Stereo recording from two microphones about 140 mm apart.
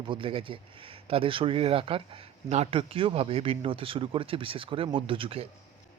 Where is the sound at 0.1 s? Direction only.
40° right (ahead or behind).